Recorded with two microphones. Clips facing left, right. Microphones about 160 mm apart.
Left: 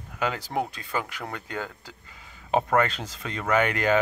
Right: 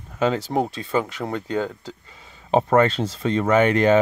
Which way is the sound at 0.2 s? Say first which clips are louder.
Right 7 dB; 25° right (ahead or behind).